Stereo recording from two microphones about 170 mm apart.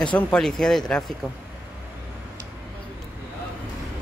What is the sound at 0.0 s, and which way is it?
Speech, 5° left (ahead or behind).